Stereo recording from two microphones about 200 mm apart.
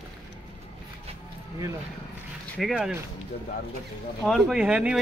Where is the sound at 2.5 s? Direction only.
Centre (ahead or behind).